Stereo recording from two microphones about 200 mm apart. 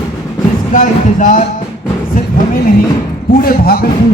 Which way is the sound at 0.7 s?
40° left (ahead or behind).